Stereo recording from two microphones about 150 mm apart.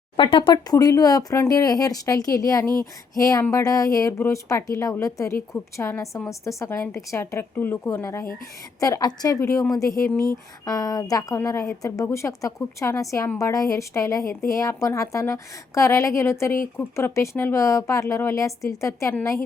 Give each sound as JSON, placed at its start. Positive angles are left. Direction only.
{"t": 0.2, "sound": "a woman's voice", "side_deg": 35}